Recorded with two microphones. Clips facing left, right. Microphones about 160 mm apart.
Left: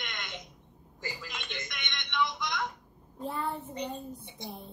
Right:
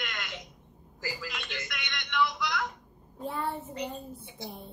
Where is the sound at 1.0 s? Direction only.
20° left (ahead or behind).